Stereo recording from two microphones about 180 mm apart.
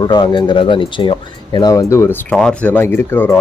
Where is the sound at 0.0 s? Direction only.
25° left (ahead or behind).